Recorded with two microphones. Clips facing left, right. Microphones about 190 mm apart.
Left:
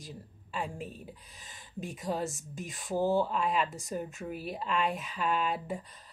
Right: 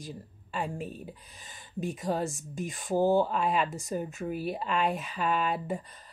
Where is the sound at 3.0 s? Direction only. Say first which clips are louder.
Right 4 dB; 30° right (ahead or behind).